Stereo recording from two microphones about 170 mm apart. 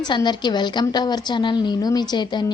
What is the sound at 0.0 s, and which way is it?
A woman's voice, 25° left (ahead or behind).